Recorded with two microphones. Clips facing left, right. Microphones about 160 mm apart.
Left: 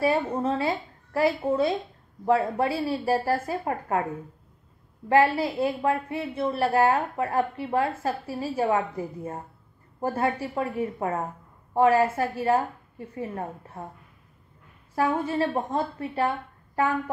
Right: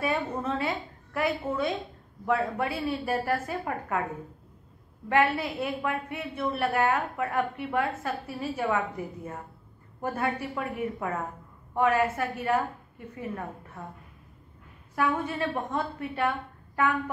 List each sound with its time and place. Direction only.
0.0 s a woman's voice: 30° left (ahead or behind)
5.1 s a woman's voice: 30° left (ahead or behind)
15.0 s a woman's voice: 35° left (ahead or behind)